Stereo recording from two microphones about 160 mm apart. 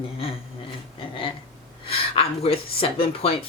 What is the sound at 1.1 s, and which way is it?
Speech, 30° left (ahead or behind).